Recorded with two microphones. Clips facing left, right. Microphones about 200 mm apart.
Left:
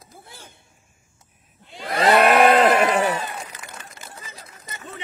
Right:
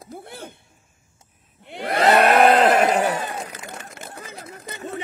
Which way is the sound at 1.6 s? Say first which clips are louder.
Right 2 dB; 60° right (ahead or behind).